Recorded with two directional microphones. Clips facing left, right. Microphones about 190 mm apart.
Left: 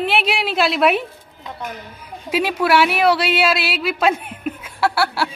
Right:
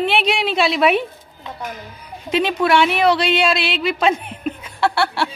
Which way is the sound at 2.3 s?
5° left (ahead or behind).